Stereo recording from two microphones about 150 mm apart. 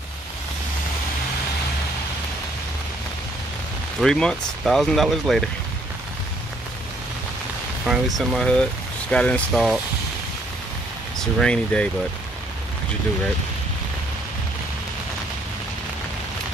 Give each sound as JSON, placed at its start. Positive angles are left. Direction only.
{"t": 4.0, "sound": "speech", "side_deg": 5}
{"t": 7.8, "sound": "speech", "side_deg": -5}
{"t": 11.1, "sound": "speech", "side_deg": 5}